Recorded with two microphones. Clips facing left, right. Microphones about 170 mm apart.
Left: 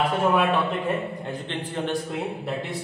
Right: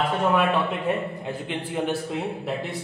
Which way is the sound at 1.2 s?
10° right (ahead or behind).